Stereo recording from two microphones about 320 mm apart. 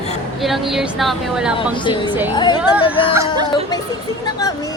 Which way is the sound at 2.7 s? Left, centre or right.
Centre.